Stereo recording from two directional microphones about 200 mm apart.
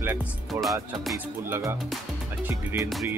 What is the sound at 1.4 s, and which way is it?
Speech, 10° right (ahead or behind).